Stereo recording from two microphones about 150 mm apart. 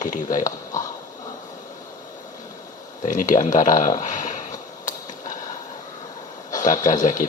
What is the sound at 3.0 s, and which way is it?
Speech, 60° left (ahead or behind).